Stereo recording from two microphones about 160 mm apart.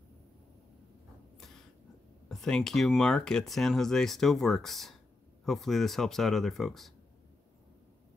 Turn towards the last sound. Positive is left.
turn(degrees=0)  # may be behind; listen again after turning